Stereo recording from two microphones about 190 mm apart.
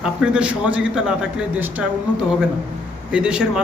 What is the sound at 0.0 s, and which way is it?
A man's voice, 5° right (ahead or behind).